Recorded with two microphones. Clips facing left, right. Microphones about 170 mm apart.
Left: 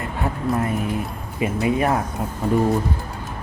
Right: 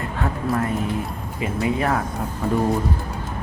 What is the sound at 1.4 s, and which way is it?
Speech, 20° left (ahead or behind).